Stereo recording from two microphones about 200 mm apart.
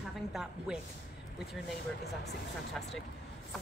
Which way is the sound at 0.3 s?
5° right (ahead or behind).